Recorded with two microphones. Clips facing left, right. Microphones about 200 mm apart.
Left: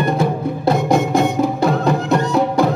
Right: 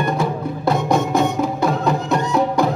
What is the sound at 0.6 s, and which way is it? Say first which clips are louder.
Music: left 2 dB; 30° left (ahead or behind).